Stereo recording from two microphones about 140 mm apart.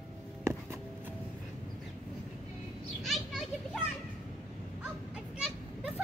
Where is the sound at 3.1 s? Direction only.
Centre (ahead or behind).